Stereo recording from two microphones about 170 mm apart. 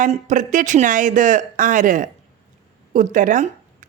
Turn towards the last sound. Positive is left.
turn(degrees=-50)  # may be behind; listen again after turning